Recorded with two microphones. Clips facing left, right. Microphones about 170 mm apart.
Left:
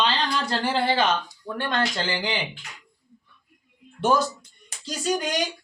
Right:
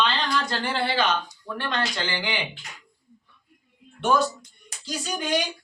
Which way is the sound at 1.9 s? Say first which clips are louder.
Left 2 dB; 20° left (ahead or behind).